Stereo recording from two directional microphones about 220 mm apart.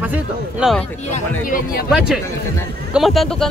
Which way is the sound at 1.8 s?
Centre (ahead or behind).